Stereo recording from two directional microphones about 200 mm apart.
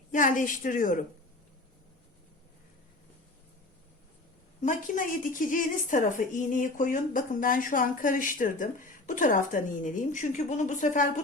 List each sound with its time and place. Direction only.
0.1 s a woman's voice: 40° left (ahead or behind)
4.6 s a woman's voice: 40° left (ahead or behind)